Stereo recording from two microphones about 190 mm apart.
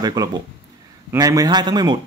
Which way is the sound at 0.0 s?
20° right (ahead or behind).